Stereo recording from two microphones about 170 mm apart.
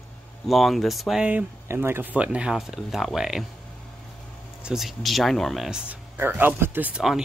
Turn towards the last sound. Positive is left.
turn(degrees=-5)  # may be behind; listen again after turning